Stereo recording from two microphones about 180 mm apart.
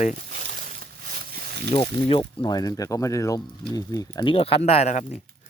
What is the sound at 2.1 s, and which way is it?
Speech, 25° left (ahead or behind).